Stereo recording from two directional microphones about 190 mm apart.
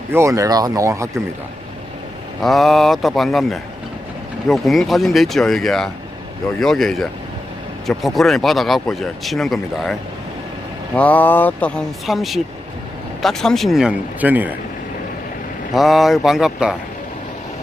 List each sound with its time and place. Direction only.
0.1 s speech: 15° right (ahead or behind)
2.4 s speech: centre (ahead or behind)
15.7 s speech: centre (ahead or behind)